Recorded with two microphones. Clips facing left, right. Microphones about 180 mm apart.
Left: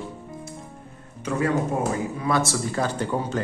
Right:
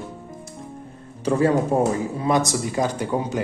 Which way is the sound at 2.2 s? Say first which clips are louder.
Right 3 dB; 20° right (ahead or behind).